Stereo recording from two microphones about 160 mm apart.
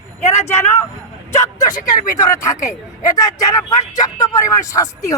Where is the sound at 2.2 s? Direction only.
20° left (ahead or behind).